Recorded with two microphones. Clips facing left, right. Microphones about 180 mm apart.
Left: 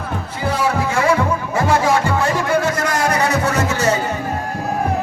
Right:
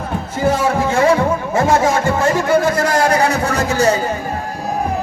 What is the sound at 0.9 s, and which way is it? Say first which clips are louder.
Music: right 6 dB; 25° right (ahead or behind).